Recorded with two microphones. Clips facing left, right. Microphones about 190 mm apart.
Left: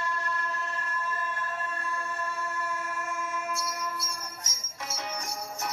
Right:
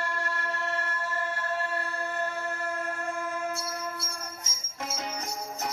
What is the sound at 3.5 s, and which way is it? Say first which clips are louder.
Music: even; 60° right (ahead or behind).